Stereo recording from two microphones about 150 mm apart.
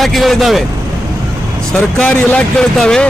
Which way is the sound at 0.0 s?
Centre (ahead or behind).